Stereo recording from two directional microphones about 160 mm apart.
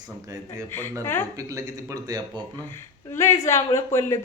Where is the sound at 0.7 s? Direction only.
15° left (ahead or behind).